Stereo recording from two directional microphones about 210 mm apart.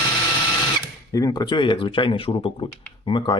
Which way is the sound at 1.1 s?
15° left (ahead or behind).